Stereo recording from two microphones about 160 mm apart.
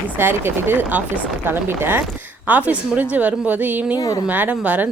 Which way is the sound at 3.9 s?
25° left (ahead or behind).